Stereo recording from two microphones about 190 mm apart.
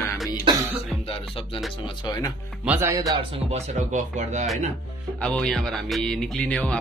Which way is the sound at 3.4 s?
35° right (ahead or behind).